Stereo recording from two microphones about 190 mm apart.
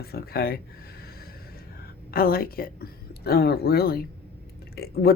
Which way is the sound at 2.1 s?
50° left (ahead or behind).